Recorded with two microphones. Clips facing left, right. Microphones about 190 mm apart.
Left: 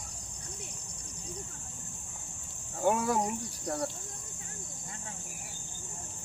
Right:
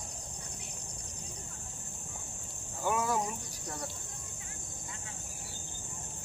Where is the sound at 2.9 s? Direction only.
60° left (ahead or behind).